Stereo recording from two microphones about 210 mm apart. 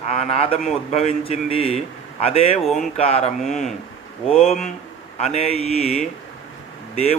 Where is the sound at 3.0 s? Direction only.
30° left (ahead or behind).